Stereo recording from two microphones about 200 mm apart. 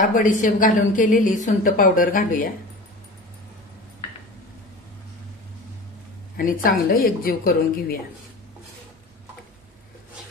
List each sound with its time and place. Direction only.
0.0 s a woman's voice: 40° left (ahead or behind)
6.3 s a woman's voice: 45° left (ahead or behind)